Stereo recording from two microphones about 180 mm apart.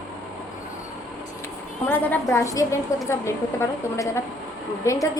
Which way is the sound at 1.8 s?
10° left (ahead or behind).